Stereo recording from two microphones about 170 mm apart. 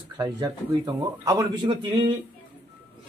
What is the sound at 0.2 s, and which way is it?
A man's voice, 20° right (ahead or behind).